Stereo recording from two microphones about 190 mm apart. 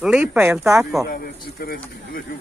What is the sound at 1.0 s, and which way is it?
Speech, 50° left (ahead or behind).